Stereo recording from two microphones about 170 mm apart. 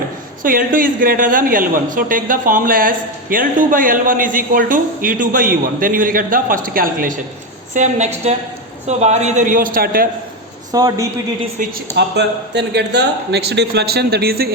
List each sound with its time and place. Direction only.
0.4 s a man's voice: 55° right (ahead or behind)
7.7 s a woman's voice: 45° right (ahead or behind); by 10.1 s 60° right (ahead or behind)
10.7 s a woman's voice: 20° right (ahead or behind)
11.6 s a man's voice: 50° right (ahead or behind)
11.9 s a man's voice: 85° right; by 14.5 s 65° right (ahead or behind)